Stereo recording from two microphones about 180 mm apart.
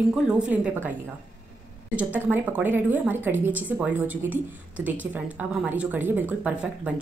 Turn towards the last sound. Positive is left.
turn(degrees=-5)  # may be behind; listen again after turning